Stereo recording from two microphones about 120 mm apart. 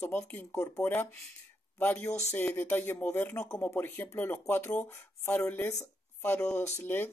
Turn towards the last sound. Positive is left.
turn(degrees=15)  # may be behind; listen again after turning